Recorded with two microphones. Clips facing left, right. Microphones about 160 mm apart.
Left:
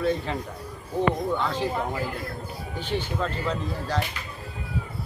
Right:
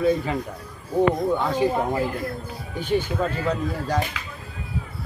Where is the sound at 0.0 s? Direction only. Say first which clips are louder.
Right 4 dB; 10° right (ahead or behind).